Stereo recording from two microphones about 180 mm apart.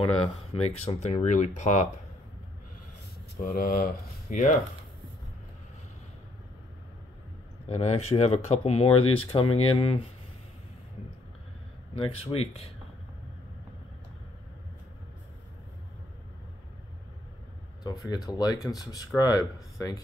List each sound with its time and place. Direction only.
0.6 s speech: 35° left (ahead or behind)
3.3 s speech: 50° left (ahead or behind)
7.6 s speech: 35° left (ahead or behind)
11.9 s speech: 30° left (ahead or behind)
17.8 s speech: 25° left (ahead or behind)